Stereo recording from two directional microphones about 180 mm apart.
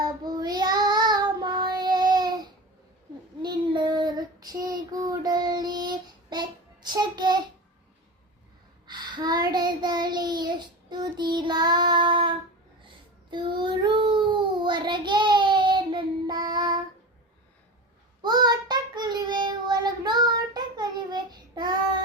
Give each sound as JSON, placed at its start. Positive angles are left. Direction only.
{"t": 0.0, "sound": "child singing", "side_deg": -25}
{"t": 8.9, "sound": "child singing", "side_deg": -25}
{"t": 13.3, "sound": "child singing", "side_deg": -25}
{"t": 18.2, "sound": "child singing", "side_deg": -20}